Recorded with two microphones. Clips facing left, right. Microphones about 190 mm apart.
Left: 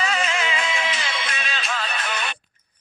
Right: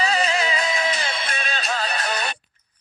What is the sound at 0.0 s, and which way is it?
Music, 35° right (ahead or behind).